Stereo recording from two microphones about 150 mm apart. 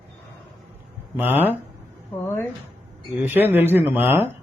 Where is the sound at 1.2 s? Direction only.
15° right (ahead or behind).